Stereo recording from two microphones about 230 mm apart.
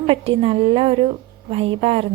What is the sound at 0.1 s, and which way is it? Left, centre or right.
A woman's voice, right.